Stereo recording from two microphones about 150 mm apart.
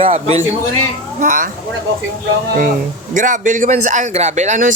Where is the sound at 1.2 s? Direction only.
60° right (ahead or behind).